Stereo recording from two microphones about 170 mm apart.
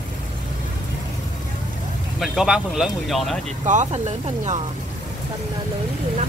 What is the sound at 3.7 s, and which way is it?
Speech, 45° right (ahead or behind).